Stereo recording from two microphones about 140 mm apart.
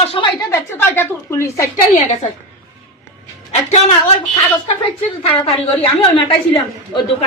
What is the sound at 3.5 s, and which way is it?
Speech, 50° left (ahead or behind).